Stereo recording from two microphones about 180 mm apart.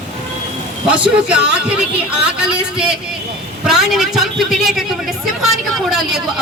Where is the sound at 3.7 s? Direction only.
Centre (ahead or behind).